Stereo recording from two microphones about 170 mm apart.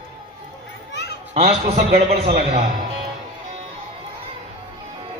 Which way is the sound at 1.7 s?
40° right (ahead or behind).